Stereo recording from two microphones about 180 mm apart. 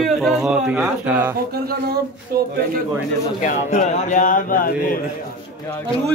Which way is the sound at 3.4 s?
40° left (ahead or behind).